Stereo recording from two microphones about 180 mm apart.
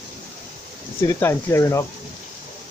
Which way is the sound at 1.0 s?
15° left (ahead or behind).